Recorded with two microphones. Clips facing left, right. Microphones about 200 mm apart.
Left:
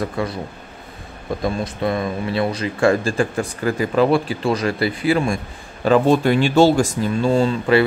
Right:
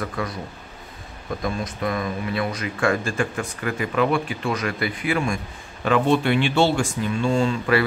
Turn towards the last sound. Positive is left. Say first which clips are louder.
# left 4 dB
turn(degrees=35)  # may be behind; listen again after turning